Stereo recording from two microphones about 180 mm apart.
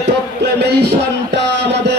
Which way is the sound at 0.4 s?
70° right (ahead or behind).